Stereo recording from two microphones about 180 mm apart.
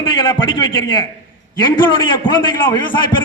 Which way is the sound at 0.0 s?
25° left (ahead or behind).